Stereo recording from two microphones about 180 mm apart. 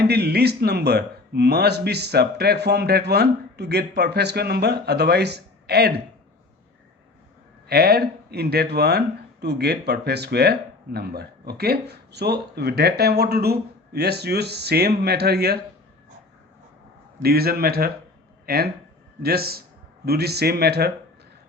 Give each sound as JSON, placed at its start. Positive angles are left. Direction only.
{"t": 0.0, "sound": "speech", "side_deg": -65}
{"t": 7.7, "sound": "speech", "side_deg": -60}
{"t": 17.2, "sound": "speech", "side_deg": -60}